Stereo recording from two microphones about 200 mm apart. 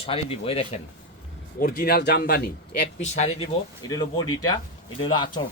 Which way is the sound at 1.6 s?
50° left (ahead or behind).